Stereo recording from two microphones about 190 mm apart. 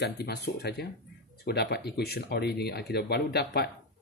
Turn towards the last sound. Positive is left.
turn(degrees=55)  # may be behind; listen again after turning